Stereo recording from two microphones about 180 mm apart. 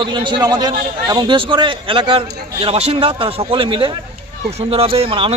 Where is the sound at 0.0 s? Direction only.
25° right (ahead or behind).